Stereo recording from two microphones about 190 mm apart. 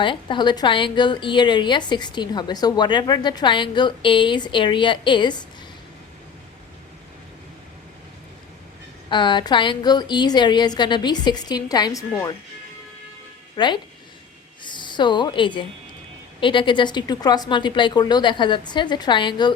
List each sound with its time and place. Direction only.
0.0 s a woman's voice: 25° left (ahead or behind)
9.0 s a woman's voice: 25° left (ahead or behind)
13.6 s a woman's voice: 20° left (ahead or behind)